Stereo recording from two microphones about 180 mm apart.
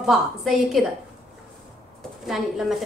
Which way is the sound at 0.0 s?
Centre (ahead or behind).